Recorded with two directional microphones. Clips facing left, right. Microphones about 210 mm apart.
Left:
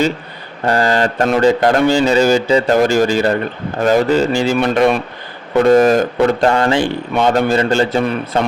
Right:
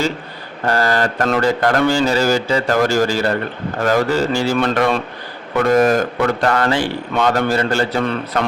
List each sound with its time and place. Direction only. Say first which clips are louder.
0.6 s speech: left 3 dB; 15° left (ahead or behind)